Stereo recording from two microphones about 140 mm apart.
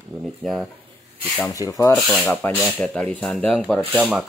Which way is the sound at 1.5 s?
25° left (ahead or behind).